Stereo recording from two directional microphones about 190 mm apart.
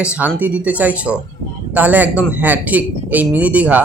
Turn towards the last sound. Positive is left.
turn(degrees=-10)  # may be behind; listen again after turning